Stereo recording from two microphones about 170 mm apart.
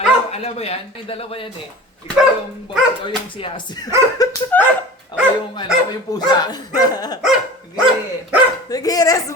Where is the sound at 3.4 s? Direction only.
30° left (ahead or behind).